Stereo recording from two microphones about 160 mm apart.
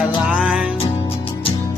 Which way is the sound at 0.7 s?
35° left (ahead or behind).